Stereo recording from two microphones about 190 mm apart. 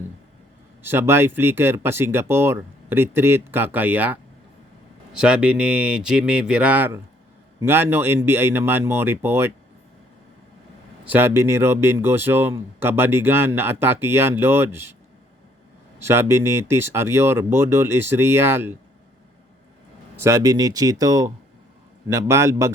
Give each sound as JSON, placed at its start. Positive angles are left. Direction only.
{"t": 0.8, "sound": "speech", "side_deg": -10}
{"t": 11.0, "sound": "speech", "side_deg": -10}
{"t": 16.0, "sound": "speech", "side_deg": -15}
{"t": 20.2, "sound": "speech", "side_deg": -15}